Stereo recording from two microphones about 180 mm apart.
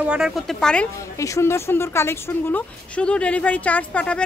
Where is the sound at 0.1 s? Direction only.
Centre (ahead or behind).